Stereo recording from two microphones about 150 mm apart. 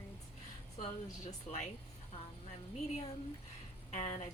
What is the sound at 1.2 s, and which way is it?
Speech, 45° left (ahead or behind).